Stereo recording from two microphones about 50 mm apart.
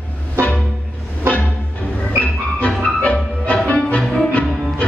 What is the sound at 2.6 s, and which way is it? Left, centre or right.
Music, left.